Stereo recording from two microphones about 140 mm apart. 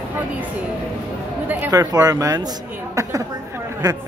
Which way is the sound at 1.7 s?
25° right (ahead or behind).